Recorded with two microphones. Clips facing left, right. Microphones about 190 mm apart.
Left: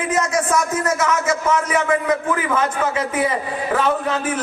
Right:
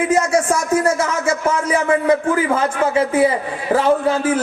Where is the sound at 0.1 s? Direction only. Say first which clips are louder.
Right 3 dB; 30° right (ahead or behind).